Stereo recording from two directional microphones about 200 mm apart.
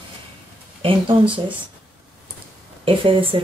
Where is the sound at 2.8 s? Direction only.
25° right (ahead or behind).